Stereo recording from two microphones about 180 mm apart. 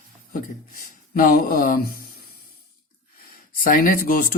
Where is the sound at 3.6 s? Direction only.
50° left (ahead or behind).